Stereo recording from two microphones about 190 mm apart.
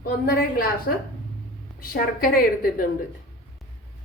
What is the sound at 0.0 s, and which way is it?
Speech, 50° left (ahead or behind).